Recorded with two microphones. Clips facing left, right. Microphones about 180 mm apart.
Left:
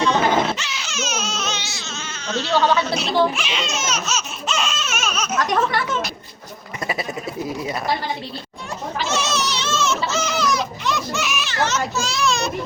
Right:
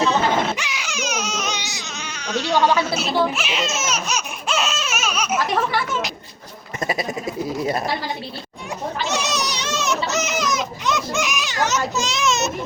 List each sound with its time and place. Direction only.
0.5 s baby cry: 15° right (ahead or behind)
2.2 s speech: 15° right (ahead or behind)
9.0 s baby cry: 15° right (ahead or behind)